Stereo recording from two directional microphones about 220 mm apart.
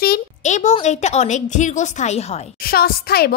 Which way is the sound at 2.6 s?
45° left (ahead or behind).